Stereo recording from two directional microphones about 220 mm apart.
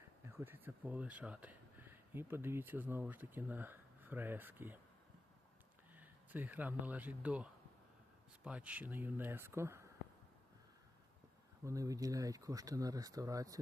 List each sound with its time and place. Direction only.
0.3 s speech: 10° right (ahead or behind)
6.0 s speech: 10° right (ahead or behind)
8.4 s speech: 5° right (ahead or behind)
11.6 s speech: 15° right (ahead or behind)